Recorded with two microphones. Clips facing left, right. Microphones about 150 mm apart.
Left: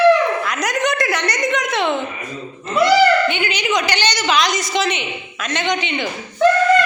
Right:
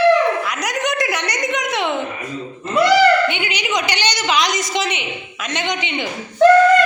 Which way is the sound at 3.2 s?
15° right (ahead or behind).